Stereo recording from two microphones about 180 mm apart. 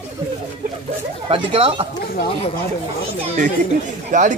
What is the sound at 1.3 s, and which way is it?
Speech, 30° right (ahead or behind).